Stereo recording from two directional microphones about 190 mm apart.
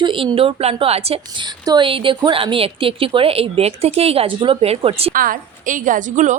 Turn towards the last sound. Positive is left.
turn(degrees=-40)  # may be behind; listen again after turning